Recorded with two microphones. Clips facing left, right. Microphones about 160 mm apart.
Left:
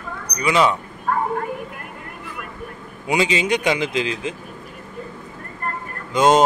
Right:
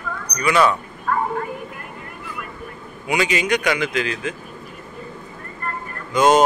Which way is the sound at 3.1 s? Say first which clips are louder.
Left 1 dB; 25° left (ahead or behind).